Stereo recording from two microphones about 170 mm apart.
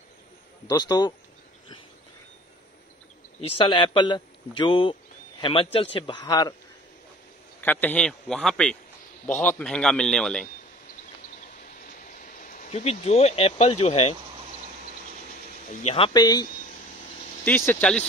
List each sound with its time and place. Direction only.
0.7 s a man's voice: 20° left (ahead or behind)
3.3 s a man's voice: 35° left (ahead or behind)
7.6 s a man's voice: 10° left (ahead or behind)
11.8 s a sound: 50° left (ahead or behind)
15.7 s a man's voice: 40° left (ahead or behind)
17.5 s speech: 10° left (ahead or behind)